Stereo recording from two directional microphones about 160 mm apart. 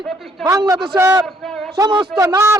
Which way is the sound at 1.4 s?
Centre (ahead or behind).